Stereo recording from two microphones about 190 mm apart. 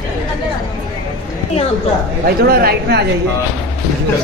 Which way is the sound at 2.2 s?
55° right (ahead or behind).